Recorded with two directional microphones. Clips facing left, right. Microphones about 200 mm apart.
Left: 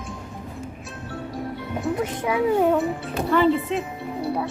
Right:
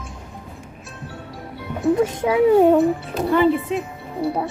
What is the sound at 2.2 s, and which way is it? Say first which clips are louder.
Speech: right 3 dB; 30° right (ahead or behind).